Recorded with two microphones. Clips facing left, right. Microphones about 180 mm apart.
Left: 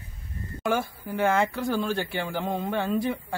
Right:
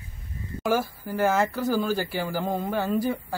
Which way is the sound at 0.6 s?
5° right (ahead or behind).